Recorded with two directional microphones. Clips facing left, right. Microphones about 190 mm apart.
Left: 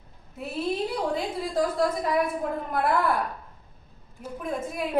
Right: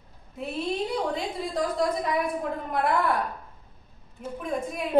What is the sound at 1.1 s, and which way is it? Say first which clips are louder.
A woman's voice: left 2 dB; centre (ahead or behind).